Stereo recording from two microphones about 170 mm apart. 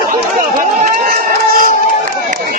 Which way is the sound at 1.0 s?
60° right (ahead or behind).